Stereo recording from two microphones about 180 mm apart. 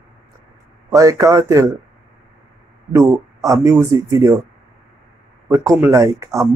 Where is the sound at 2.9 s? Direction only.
15° right (ahead or behind).